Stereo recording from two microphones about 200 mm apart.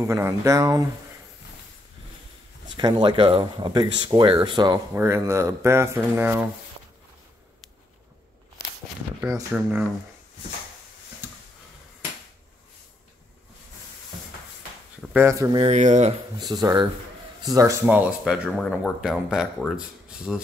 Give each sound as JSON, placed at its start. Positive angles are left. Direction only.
{"t": 0.0, "sound": "speech", "side_deg": -15}
{"t": 2.7, "sound": "speech", "side_deg": -20}
{"t": 9.2, "sound": "speech", "side_deg": -10}
{"t": 15.0, "sound": "speech", "side_deg": -10}
{"t": 15.6, "sound": "speech", "side_deg": -35}
{"t": 16.3, "sound": "speech", "side_deg": -20}